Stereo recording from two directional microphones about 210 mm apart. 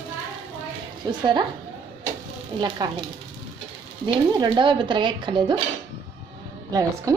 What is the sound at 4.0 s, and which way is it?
Speech, 20° right (ahead or behind).